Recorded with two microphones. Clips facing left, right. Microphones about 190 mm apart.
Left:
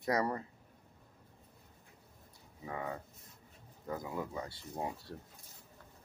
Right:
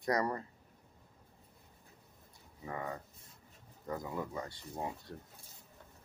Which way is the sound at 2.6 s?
10° left (ahead or behind).